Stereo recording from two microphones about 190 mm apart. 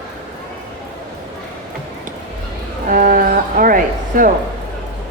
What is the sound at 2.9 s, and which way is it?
Music, 45° right (ahead or behind).